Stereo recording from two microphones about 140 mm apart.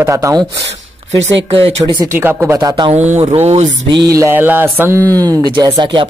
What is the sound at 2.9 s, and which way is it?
Mantra, 55° right (ahead or behind).